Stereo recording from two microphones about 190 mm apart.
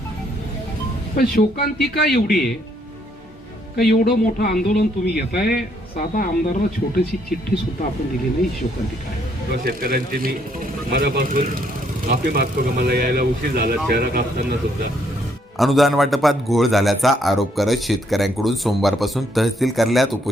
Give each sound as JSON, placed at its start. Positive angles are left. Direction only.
{"t": 1.1, "sound": "speech", "side_deg": 55}
{"t": 3.8, "sound": "speech", "side_deg": 55}
{"t": 9.6, "sound": "speech", "side_deg": -50}
{"t": 15.5, "sound": "a man's voice", "side_deg": 0}